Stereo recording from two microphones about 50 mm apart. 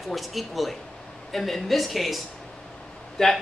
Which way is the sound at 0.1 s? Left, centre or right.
Centre.